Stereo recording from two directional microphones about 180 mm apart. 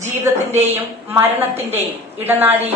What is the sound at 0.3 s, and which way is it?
A woman's voice, 15° right (ahead or behind).